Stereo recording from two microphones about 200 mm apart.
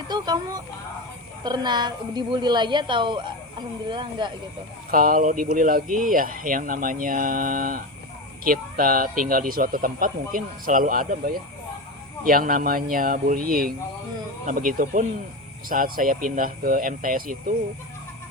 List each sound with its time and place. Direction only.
0.1 s a woman's voice: 20° right (ahead or behind)
4.9 s speech: 45° right (ahead or behind)
12.2 s speech: 45° right (ahead or behind)